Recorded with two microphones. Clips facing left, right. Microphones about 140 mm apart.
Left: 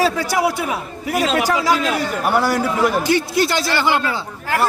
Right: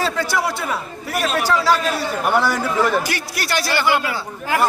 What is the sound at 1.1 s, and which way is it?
Speech, 90° left.